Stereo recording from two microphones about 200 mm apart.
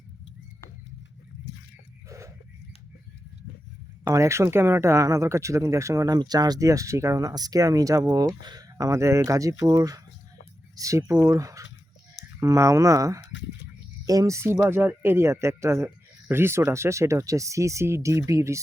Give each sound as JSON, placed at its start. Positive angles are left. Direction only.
{"t": 2.0, "sound": "goat", "side_deg": -15}
{"t": 4.0, "sound": "speech", "side_deg": -15}